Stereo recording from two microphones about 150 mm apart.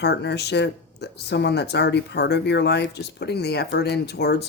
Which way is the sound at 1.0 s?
90° left.